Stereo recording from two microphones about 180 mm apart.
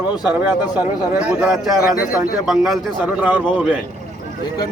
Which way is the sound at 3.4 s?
5° left (ahead or behind).